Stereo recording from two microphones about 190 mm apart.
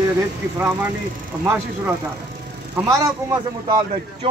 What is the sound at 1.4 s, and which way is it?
Speech, 10° right (ahead or behind).